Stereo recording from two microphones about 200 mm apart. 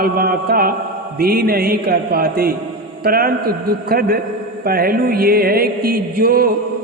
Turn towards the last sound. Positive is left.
turn(degrees=-50)  # may be behind; listen again after turning